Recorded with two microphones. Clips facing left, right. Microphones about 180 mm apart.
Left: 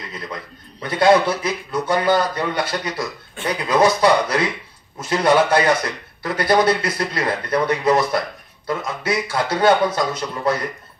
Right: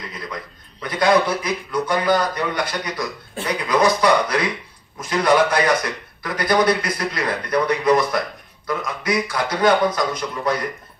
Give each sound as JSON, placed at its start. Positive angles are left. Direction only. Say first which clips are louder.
{"t": 0.8, "sound": "speech", "louder": "left 2 dB", "side_deg": 25}